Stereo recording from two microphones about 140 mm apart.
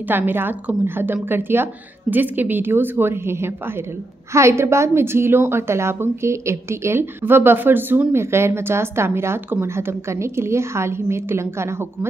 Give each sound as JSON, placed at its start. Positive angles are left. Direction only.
{"t": 0.0, "sound": "a woman's voice", "side_deg": -15}